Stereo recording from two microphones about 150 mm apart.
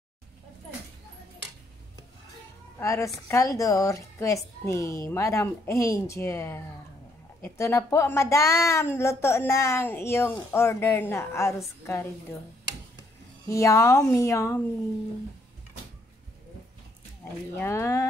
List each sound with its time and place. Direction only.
2.8 s a woman's voice: 20° left (ahead or behind)
13.5 s a woman's voice: 20° left (ahead or behind)
17.2 s a woman's voice: 15° left (ahead or behind)